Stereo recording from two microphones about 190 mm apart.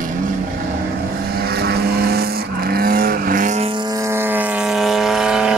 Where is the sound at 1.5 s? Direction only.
55° right (ahead or behind); by 3.6 s 40° right (ahead or behind).